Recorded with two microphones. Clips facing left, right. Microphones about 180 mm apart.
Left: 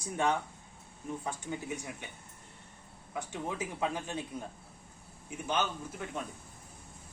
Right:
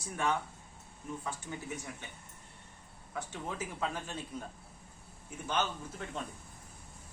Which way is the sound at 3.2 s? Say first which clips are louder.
Left 3 dB; 15° left (ahead or behind).